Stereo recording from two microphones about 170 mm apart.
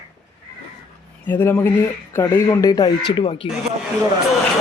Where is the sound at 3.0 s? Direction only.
30° left (ahead or behind).